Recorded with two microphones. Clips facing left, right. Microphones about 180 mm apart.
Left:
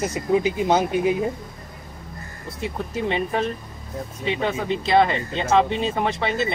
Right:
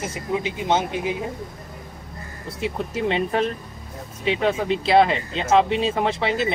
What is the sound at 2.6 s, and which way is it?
Speech, 90° right.